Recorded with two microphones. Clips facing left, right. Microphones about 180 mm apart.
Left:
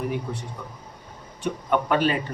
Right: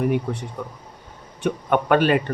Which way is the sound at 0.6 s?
60° right (ahead or behind).